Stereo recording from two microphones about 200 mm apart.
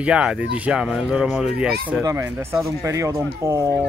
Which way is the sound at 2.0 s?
15° right (ahead or behind).